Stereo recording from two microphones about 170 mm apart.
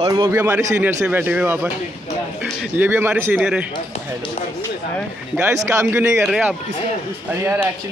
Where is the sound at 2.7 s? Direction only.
10° right (ahead or behind).